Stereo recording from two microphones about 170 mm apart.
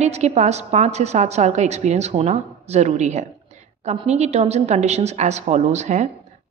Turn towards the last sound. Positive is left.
turn(degrees=-45)  # may be behind; listen again after turning